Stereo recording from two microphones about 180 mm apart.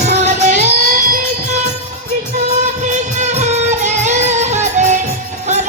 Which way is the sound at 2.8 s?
40° right (ahead or behind).